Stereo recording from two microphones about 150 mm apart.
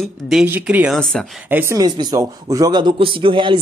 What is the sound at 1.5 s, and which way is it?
Speech, 15° right (ahead or behind).